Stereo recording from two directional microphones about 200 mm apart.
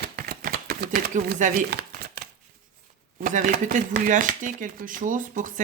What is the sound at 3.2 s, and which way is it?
Speech, 40° right (ahead or behind).